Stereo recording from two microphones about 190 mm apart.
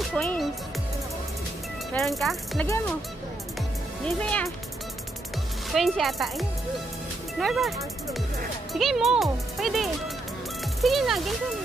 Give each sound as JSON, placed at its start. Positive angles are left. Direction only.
{"t": 0.0, "sound": "music", "side_deg": 5}
{"t": 2.0, "sound": "speech", "side_deg": 0}
{"t": 4.0, "sound": "speech", "side_deg": 5}
{"t": 5.7, "sound": "speech", "side_deg": 0}